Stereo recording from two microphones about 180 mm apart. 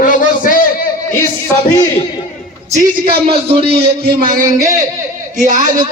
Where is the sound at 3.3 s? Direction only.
30° right (ahead or behind).